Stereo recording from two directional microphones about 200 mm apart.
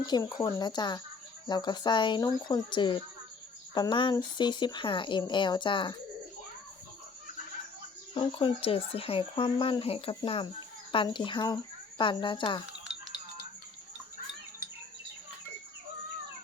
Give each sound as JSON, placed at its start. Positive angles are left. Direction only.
{"t": 0.0, "sound": "speech", "side_deg": 20}
{"t": 8.1, "sound": "speech", "side_deg": 25}